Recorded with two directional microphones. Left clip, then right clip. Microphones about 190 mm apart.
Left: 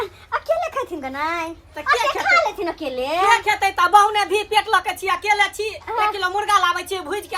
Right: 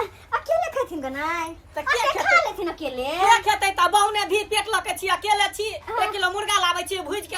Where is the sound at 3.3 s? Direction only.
Centre (ahead or behind).